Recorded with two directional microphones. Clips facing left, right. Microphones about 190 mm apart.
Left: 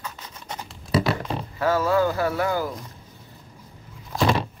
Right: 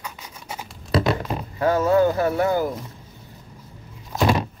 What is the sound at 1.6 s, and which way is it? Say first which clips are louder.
Speech: right 3 dB; 20° right (ahead or behind).